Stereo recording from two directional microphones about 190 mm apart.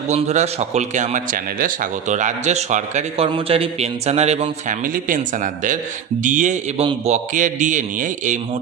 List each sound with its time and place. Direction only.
0.1 s speech: 35° right (ahead or behind)